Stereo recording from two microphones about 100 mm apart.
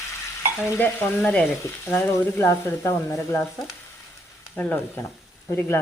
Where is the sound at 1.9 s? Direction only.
20° left (ahead or behind).